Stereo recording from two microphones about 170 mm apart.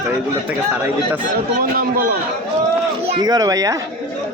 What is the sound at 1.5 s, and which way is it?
Speech, 60° right (ahead or behind).